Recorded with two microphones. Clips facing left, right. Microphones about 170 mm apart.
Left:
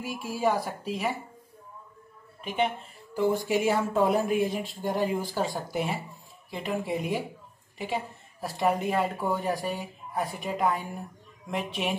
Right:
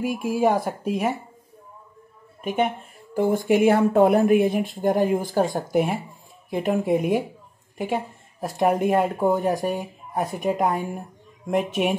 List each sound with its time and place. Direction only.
0.0 s speech: 50° right (ahead or behind)
2.4 s speech: 45° right (ahead or behind)